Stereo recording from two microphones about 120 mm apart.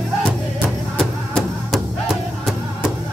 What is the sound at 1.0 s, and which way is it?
Music, centre (ahead or behind).